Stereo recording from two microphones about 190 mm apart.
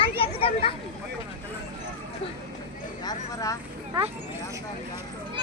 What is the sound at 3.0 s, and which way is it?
Vehicle, 20° left (ahead or behind).